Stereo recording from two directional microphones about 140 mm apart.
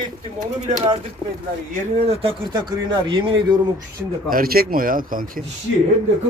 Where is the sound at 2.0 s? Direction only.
45° right (ahead or behind).